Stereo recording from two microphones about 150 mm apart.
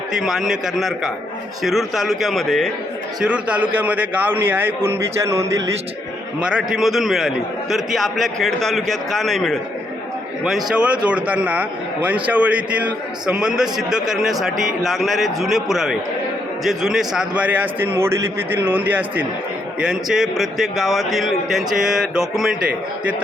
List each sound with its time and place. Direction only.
0.1 s a man's voice: centre (ahead or behind); by 5.7 s 20° right (ahead or behind)
6.4 s a man's voice: 5° right (ahead or behind)